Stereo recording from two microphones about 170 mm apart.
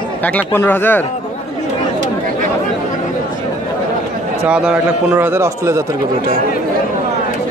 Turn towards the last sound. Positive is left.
turn(degrees=-15)  # may be behind; listen again after turning